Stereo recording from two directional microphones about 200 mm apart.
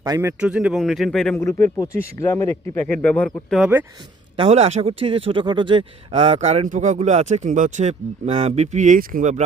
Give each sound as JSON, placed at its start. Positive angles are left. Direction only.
{"t": 0.0, "sound": "speech", "side_deg": -15}
{"t": 1.4, "sound": "speech", "side_deg": 15}
{"t": 4.4, "sound": "speech", "side_deg": -30}